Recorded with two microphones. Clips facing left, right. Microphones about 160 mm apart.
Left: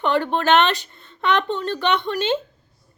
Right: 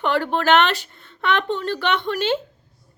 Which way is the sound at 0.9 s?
15° left (ahead or behind).